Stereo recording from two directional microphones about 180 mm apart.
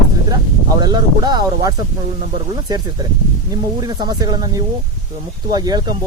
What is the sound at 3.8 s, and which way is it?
Speech, 20° right (ahead or behind).